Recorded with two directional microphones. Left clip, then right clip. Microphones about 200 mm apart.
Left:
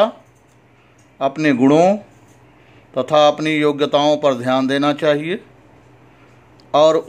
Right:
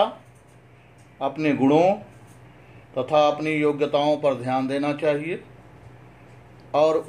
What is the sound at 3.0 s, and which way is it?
A man's voice, 60° left (ahead or behind).